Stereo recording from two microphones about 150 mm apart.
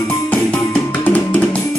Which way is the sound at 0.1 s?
10° left (ahead or behind).